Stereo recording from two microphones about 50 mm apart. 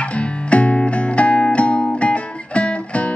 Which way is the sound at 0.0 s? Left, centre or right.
Left.